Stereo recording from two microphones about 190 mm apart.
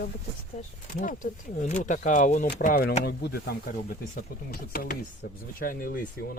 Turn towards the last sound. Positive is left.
turn(degrees=45)  # may be behind; listen again after turning